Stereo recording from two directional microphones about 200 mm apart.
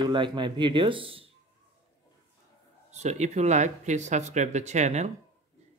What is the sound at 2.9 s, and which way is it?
Speech, 35° right (ahead or behind).